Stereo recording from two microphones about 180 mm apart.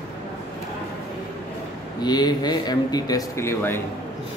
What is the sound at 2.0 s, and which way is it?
Speech, 25° left (ahead or behind).